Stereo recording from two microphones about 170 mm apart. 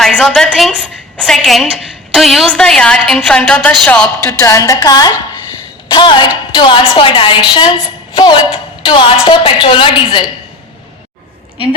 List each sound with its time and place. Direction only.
0.0 s a woman's voice: 5° left (ahead or behind)
4.3 s a woman's voice: 20° left (ahead or behind)